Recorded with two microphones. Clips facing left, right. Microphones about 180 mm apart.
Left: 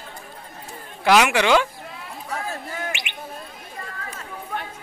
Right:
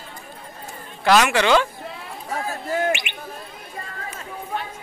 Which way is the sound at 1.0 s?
10° left (ahead or behind).